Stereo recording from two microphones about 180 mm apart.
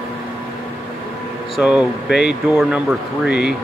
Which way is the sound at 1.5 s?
5° right (ahead or behind).